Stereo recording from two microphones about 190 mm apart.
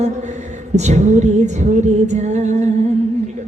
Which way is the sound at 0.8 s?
35° right (ahead or behind).